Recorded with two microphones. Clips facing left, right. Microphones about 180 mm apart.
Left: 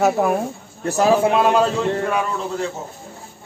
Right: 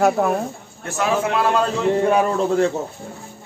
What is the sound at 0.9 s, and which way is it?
Speech, 35° left (ahead or behind).